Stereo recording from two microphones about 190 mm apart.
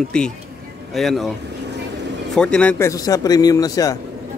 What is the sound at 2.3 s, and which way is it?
Speech, 5° left (ahead or behind).